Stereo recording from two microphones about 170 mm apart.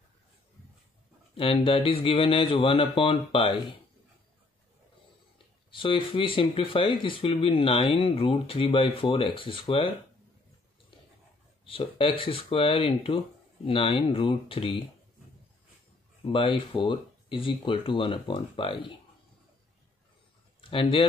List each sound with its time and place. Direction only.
1.3 s speech: 30° left (ahead or behind)
5.7 s speech: 30° left (ahead or behind)
11.6 s speech: 35° left (ahead or behind)
16.3 s speech: 30° left (ahead or behind)
20.7 s speech: 30° left (ahead or behind)